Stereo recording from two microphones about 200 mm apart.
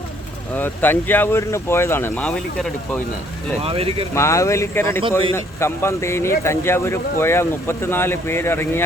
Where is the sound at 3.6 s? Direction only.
30° right (ahead or behind).